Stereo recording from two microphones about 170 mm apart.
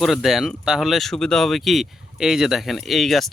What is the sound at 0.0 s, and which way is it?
Speech, centre (ahead or behind).